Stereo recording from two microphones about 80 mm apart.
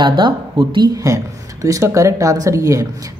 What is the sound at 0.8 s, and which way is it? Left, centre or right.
Speech, right.